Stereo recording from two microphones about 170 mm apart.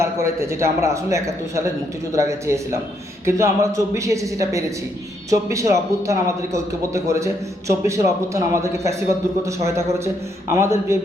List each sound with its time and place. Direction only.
0.0 s a man's voice: 15° right (ahead or behind)